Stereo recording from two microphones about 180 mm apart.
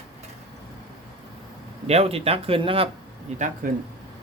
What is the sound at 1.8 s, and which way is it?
Speech, 35° right (ahead or behind).